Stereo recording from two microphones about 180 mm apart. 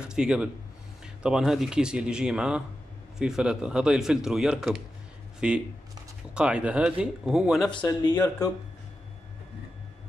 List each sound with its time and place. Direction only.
0.0 s speech: 5° right (ahead or behind)
7.7 s speech: 25° left (ahead or behind)